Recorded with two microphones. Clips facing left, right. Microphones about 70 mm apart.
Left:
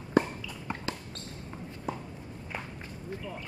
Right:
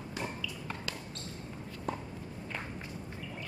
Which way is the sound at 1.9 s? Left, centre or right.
Centre.